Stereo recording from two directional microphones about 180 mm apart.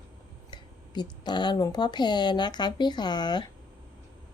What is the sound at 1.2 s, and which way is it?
A woman's voice, 25° left (ahead or behind).